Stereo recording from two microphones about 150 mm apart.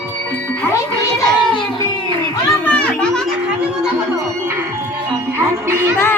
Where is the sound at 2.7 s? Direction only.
10° left (ahead or behind).